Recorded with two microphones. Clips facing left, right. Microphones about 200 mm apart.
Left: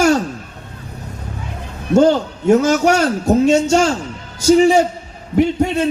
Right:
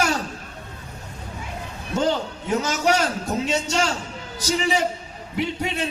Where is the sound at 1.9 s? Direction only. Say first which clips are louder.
Left 11 dB; 45° left (ahead or behind).